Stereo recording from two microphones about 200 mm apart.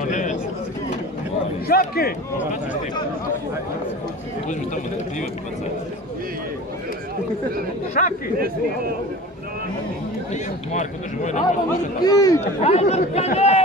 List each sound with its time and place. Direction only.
0.0 s bird: 40° left (ahead or behind)
1.7 s a man's voice: 50° left (ahead or behind)
8.0 s a man's voice: 45° left (ahead or behind)
10.3 s a man's voice: 35° left (ahead or behind)
12.0 s speech: 20° left (ahead or behind)
12.6 s a man's voice: 35° left (ahead or behind)